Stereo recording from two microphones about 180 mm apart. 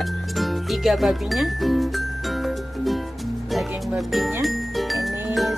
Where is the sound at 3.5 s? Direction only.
Centre (ahead or behind).